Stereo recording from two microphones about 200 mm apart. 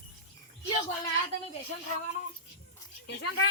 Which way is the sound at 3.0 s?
60° left (ahead or behind).